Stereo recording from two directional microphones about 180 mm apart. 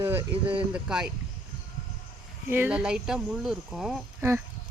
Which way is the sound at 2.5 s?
10° right (ahead or behind).